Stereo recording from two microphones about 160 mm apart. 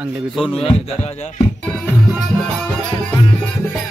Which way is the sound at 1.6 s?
5° left (ahead or behind).